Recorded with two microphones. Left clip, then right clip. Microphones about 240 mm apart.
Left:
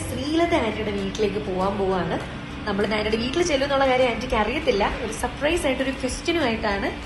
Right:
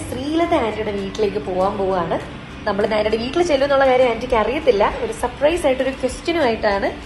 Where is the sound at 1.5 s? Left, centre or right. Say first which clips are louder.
Right 6 dB; right.